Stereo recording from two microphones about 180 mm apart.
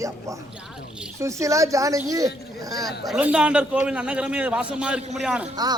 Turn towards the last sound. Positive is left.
turn(degrees=-5)  # may be behind; listen again after turning